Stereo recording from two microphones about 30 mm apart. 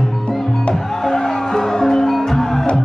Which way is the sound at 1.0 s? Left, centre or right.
Centre.